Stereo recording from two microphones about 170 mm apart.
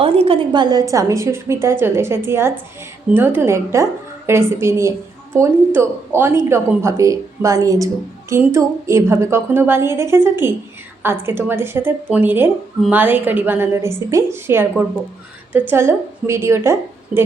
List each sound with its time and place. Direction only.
0.0 s a woman's voice: 30° right (ahead or behind); by 16.7 s 15° right (ahead or behind)